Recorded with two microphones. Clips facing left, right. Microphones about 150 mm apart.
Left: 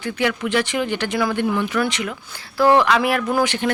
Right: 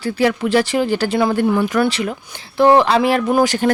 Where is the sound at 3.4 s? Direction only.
40° right (ahead or behind).